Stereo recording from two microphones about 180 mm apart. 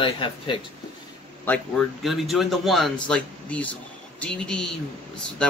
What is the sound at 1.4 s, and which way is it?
Speech, 10° left (ahead or behind).